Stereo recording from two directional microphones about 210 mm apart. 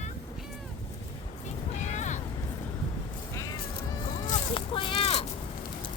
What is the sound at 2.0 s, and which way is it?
Vehicle, 35° left (ahead or behind).